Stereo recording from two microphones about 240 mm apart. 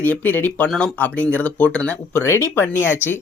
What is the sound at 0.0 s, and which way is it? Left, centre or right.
Speech, centre.